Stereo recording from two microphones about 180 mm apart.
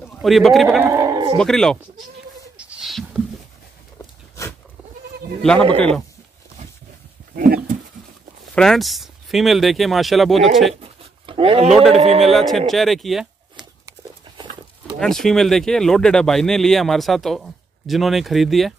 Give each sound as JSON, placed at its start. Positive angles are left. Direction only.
{"t": 0.0, "sound": "a man's voice", "side_deg": 0}
{"t": 0.8, "sound": "a sound", "side_deg": -15}
{"t": 1.4, "sound": "speech", "side_deg": 5}
{"t": 2.5, "sound": "a sound", "side_deg": -5}
{"t": 5.4, "sound": "speech", "side_deg": 5}
{"t": 7.3, "sound": "dog", "side_deg": -55}
{"t": 8.5, "sound": "speech", "side_deg": 0}
{"t": 10.8, "sound": "a sound", "side_deg": -30}
{"t": 11.7, "sound": "speech", "side_deg": 0}
{"t": 12.0, "sound": "a man's voice", "side_deg": -35}
{"t": 12.3, "sound": "speech", "side_deg": 0}
{"t": 15.0, "sound": "speech", "side_deg": 0}